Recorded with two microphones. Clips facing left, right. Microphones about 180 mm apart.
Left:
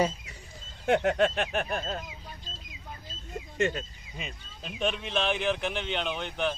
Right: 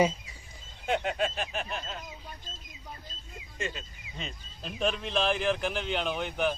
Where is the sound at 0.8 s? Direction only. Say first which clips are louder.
Left 5 dB; 65° left (ahead or behind).